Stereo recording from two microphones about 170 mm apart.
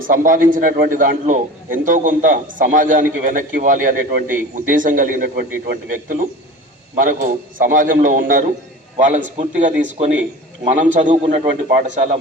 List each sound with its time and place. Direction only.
0.1 s a man's voice: 55° right (ahead or behind)